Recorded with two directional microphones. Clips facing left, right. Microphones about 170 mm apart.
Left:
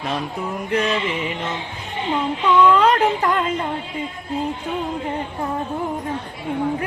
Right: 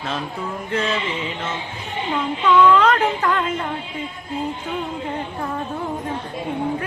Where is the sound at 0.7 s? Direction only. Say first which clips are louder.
Left 2 dB; 15° left (ahead or behind).